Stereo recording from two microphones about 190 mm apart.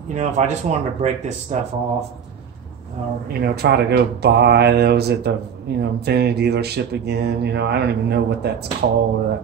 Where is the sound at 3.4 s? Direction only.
60° right (ahead or behind).